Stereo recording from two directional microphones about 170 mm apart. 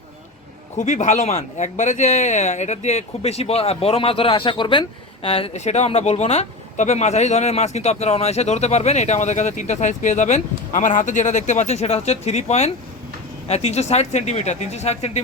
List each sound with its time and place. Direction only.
0.8 s speech: 45° left (ahead or behind)